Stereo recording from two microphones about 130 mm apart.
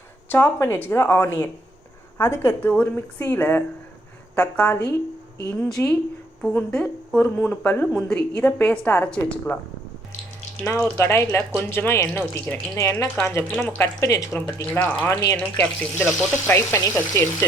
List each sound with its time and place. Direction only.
0.3 s a woman's voice: 15° left (ahead or behind)
10.8 s a woman's voice: 20° left (ahead or behind)